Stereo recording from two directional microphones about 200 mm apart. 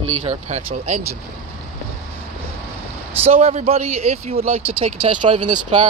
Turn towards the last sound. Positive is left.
turn(degrees=-25)  # may be behind; listen again after turning